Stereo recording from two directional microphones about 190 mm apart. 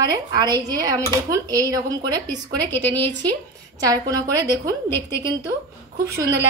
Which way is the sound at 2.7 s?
10° left (ahead or behind).